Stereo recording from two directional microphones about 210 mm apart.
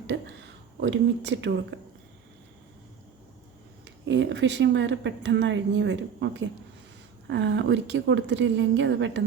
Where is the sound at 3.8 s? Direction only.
60° right (ahead or behind).